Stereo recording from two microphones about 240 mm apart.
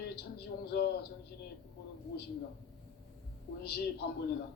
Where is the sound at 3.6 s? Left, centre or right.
Left.